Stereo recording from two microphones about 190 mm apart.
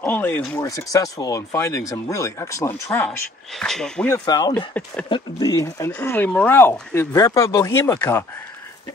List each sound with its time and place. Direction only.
0.0 s speech: 10° left (ahead or behind)
4.1 s speech: 20° left (ahead or behind)
4.6 s speech: 5° left (ahead or behind)
5.1 s speech: 20° left (ahead or behind)